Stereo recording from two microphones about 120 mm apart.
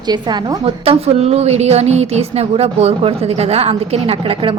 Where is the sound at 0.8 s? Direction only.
55° right (ahead or behind).